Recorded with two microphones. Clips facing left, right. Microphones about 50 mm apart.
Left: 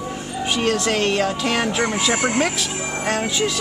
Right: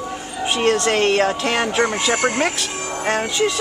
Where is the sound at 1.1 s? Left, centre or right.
Right.